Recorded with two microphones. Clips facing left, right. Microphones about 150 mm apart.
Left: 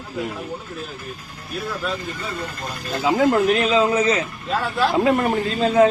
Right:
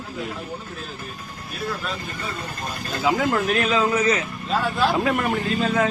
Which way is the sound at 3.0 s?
25° left (ahead or behind).